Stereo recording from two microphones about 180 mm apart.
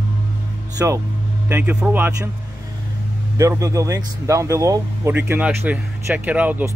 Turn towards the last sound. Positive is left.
turn(degrees=-10)  # may be behind; listen again after turning